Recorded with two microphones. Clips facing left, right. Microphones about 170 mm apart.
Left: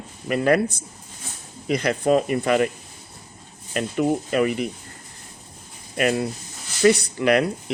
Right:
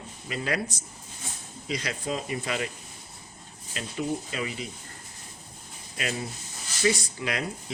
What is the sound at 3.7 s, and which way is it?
Speech, 60° left (ahead or behind).